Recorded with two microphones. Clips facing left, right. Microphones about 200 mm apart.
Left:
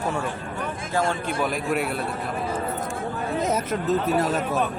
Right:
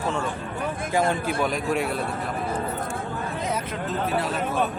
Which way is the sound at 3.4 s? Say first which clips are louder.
Left 5 dB; 45° left (ahead or behind).